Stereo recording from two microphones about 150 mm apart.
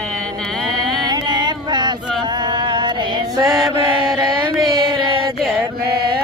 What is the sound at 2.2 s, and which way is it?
Chant, 30° right (ahead or behind).